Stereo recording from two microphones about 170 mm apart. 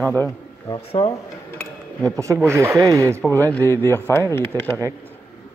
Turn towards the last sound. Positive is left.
turn(degrees=10)  # may be behind; listen again after turning